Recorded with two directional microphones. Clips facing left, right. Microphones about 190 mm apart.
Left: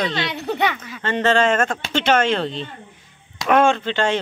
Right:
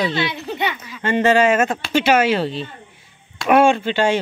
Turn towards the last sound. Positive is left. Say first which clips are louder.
# right 3 dB
turn(degrees=-10)  # may be behind; listen again after turning